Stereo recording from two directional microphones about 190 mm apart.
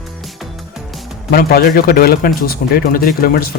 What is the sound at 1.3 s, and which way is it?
Speech, 55° left (ahead or behind).